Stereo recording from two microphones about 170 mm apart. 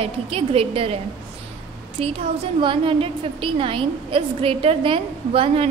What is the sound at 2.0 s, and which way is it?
A woman's voice, 30° right (ahead or behind).